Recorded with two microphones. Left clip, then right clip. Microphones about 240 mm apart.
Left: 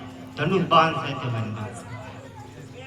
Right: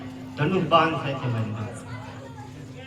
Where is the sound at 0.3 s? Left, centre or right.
Centre.